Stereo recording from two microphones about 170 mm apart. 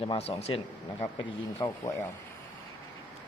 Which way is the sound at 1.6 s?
20° left (ahead or behind).